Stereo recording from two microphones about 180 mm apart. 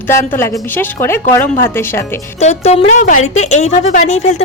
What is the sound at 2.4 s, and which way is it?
A woman's voice, 40° left (ahead or behind).